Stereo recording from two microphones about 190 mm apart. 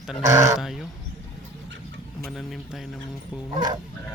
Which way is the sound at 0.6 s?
Centre (ahead or behind).